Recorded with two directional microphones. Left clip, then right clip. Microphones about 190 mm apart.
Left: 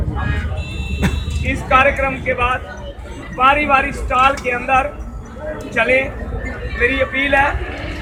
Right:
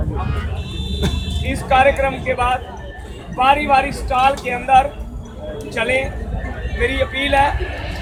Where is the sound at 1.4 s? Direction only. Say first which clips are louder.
Even; 40° right (ahead or behind).